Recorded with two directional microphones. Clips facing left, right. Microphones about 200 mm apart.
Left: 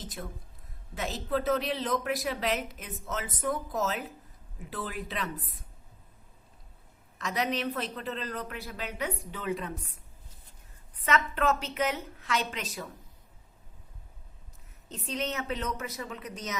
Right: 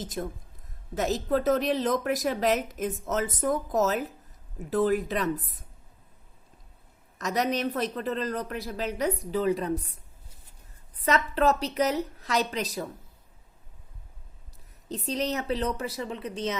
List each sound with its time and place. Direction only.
0.0 s a woman's voice: 45° right (ahead or behind)
7.2 s a man's voice: 45° right (ahead or behind)
11.0 s a man's voice: 35° right (ahead or behind)
14.8 s a man's voice: 35° right (ahead or behind)